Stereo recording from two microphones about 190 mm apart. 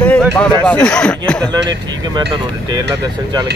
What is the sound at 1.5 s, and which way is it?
Speech, 20° right (ahead or behind).